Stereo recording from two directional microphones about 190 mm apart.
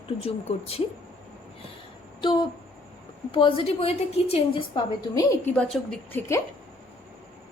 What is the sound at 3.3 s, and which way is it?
A woman's voice, 30° left (ahead or behind).